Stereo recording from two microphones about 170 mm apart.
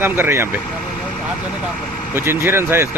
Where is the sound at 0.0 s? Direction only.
15° right (ahead or behind).